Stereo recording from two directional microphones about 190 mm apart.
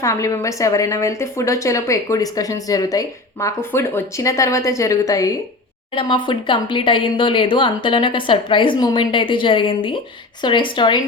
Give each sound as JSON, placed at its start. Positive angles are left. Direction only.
{"t": 0.0, "sound": "a woman's voice", "side_deg": 15}